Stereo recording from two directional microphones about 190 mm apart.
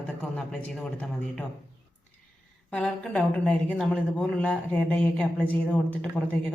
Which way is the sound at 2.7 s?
5° left (ahead or behind).